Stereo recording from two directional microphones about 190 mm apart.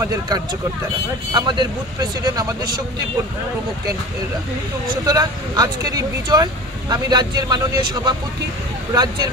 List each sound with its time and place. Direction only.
0.0 s speech: 15° right (ahead or behind)
5.0 s speech: 20° right (ahead or behind)